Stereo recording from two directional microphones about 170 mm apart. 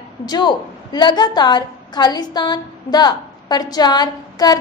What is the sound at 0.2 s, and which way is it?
A woman's voice, 25° left (ahead or behind).